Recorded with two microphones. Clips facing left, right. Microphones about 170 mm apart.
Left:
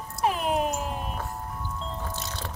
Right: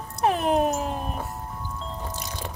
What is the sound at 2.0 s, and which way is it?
Music, 15° right (ahead or behind).